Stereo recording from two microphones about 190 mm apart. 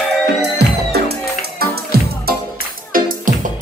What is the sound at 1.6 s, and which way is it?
Music, 55° right (ahead or behind).